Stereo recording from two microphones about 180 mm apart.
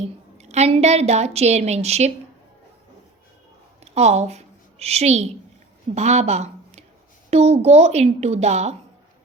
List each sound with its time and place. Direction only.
0.3 s a woman's voice: 35° right (ahead or behind)
3.8 s a woman's voice: 35° right (ahead or behind)